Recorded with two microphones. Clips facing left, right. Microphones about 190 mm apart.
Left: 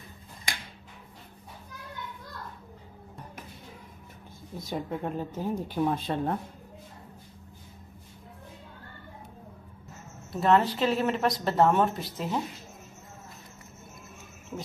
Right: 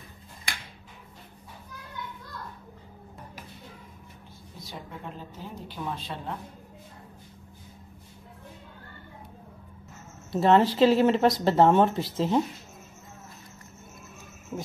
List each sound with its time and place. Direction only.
4.6 s speech: 50° left (ahead or behind)
10.3 s speech: 30° right (ahead or behind)